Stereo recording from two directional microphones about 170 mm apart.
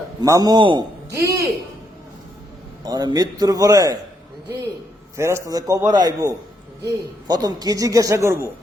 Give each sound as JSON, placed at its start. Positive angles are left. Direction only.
{"t": 0.2, "sound": "a man's voice", "side_deg": -20}
{"t": 2.8, "sound": "a man's voice", "side_deg": -25}
{"t": 5.1, "sound": "a man's voice", "side_deg": -15}